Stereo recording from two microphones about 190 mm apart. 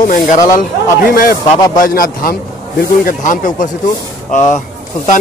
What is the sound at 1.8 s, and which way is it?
A man's voice, 45° left (ahead or behind).